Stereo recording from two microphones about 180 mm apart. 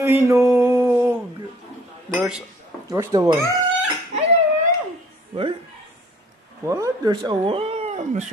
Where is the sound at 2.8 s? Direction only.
15° right (ahead or behind).